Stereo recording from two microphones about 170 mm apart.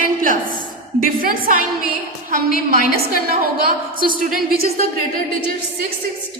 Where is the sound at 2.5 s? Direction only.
60° left (ahead or behind).